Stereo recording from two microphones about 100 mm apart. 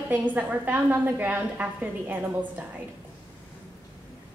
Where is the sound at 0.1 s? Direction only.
15° right (ahead or behind).